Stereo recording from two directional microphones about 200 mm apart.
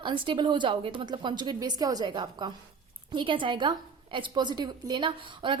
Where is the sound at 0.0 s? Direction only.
25° right (ahead or behind).